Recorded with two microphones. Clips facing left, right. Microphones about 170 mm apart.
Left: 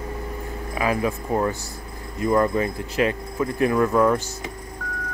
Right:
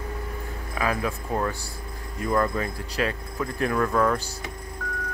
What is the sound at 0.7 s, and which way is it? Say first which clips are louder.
Speech: left 4 dB; 10° left (ahead or behind).